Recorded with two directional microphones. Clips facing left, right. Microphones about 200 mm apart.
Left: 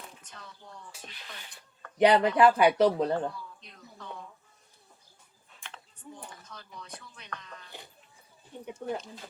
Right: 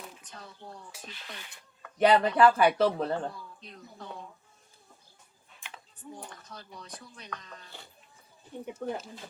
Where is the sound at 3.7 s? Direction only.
35° right (ahead or behind).